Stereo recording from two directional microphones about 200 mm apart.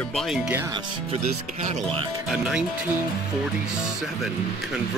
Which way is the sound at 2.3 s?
Centre (ahead or behind).